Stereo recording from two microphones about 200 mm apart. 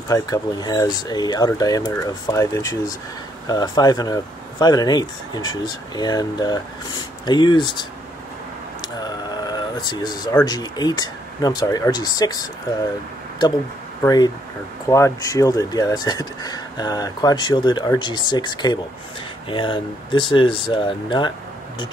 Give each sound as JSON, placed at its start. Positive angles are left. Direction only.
{"t": 0.1, "sound": "speech", "side_deg": 20}
{"t": 9.0, "sound": "sheep", "side_deg": 20}
{"t": 10.4, "sound": "speech", "side_deg": 20}
{"t": 14.0, "sound": "speech", "side_deg": 20}